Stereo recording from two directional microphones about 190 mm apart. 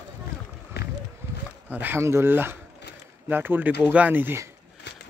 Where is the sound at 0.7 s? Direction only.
60° left (ahead or behind).